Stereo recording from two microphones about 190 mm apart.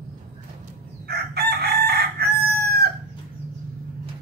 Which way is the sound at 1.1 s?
55° right (ahead or behind).